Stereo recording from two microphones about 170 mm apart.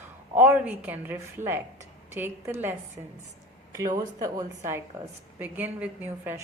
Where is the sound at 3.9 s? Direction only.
20° right (ahead or behind).